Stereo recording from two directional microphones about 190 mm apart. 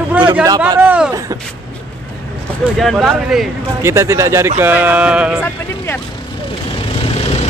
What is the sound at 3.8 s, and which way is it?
Speech, 15° right (ahead or behind).